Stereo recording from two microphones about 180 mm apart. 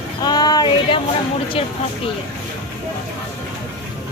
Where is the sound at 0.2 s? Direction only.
20° left (ahead or behind).